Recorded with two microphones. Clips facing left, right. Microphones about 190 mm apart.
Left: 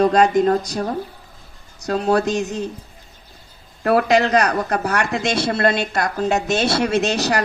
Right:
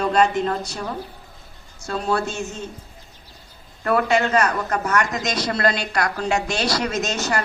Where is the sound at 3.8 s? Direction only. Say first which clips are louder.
Left 4 dB; 35° left (ahead or behind).